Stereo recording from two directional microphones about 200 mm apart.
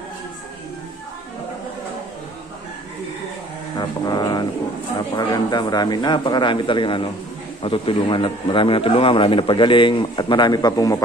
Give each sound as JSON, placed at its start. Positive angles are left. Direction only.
{"t": 3.7, "sound": "a man's voice", "side_deg": 20}